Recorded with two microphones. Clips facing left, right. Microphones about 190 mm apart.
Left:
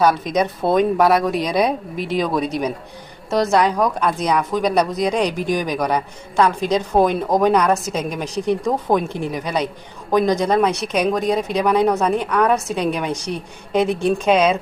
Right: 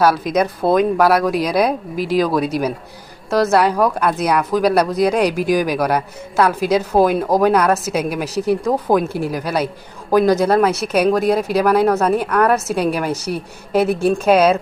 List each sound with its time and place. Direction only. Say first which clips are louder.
0.0 s speech: right 2 dB; 5° right (ahead or behind)